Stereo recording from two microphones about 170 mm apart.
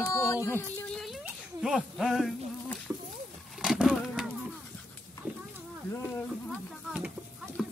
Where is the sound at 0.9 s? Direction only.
Centre (ahead or behind).